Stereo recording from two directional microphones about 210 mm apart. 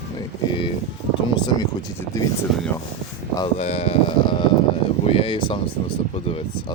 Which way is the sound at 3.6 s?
30° left (ahead or behind).